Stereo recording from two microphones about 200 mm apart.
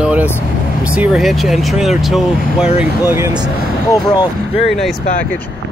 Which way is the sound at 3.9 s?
15° left (ahead or behind).